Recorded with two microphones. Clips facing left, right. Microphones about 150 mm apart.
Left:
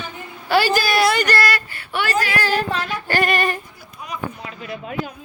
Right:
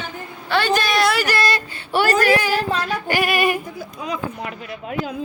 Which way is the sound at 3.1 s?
10° right (ahead or behind).